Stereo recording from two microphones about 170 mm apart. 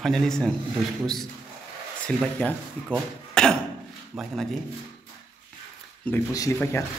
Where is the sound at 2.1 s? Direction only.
5° left (ahead or behind).